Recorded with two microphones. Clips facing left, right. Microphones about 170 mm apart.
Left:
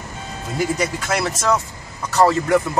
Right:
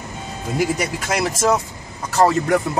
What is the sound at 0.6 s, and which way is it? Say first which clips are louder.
Speech: even; 15° right (ahead or behind).